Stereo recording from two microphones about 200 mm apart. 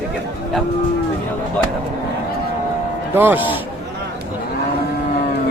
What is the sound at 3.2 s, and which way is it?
Speech, 10° right (ahead or behind).